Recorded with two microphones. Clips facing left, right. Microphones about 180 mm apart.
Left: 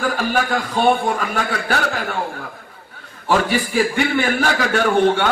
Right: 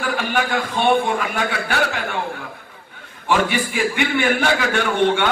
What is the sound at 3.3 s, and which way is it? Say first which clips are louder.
A man's voice: left 1 dB; 40° left (ahead or behind).